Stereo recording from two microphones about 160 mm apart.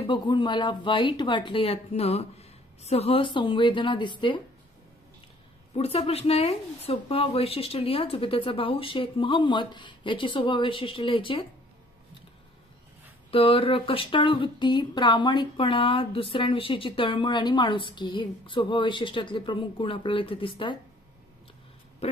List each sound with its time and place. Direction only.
0.0 s speech: 30° left (ahead or behind)
5.8 s speech: 40° left (ahead or behind)
13.3 s speech: 35° left (ahead or behind)